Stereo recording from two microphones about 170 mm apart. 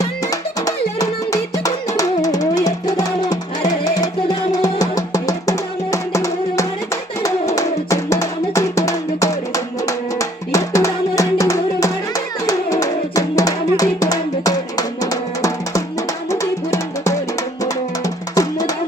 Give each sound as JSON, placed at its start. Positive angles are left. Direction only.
{"t": 0.0, "sound": "music", "side_deg": 20}